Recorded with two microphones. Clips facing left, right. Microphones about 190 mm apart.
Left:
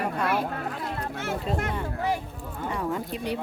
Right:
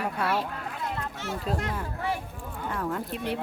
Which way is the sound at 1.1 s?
55° left (ahead or behind).